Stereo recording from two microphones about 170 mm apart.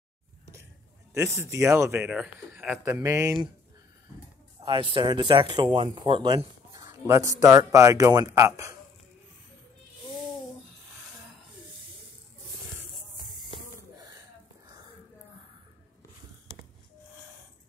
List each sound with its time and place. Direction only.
1.1 s a man's voice: 15° right (ahead or behind)
4.6 s speech: 30° right (ahead or behind)